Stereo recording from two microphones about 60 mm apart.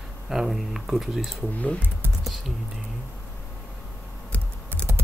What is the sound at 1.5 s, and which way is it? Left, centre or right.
Speech, left.